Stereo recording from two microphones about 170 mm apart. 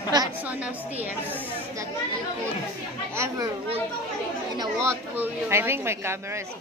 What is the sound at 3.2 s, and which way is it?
Speech, 15° right (ahead or behind).